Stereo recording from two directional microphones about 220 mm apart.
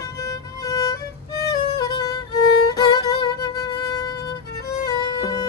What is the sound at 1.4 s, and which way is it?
Violin, 15° left (ahead or behind).